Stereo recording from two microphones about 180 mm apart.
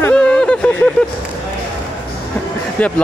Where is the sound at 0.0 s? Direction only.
5° left (ahead or behind).